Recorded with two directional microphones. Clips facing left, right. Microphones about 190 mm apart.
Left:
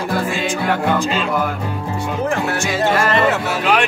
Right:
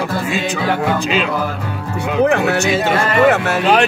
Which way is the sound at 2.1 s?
65° right (ahead or behind).